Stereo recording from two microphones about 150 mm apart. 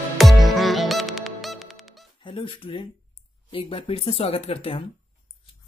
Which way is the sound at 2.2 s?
35° left (ahead or behind).